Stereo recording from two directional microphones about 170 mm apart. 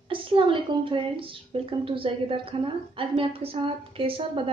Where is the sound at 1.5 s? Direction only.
35° right (ahead or behind).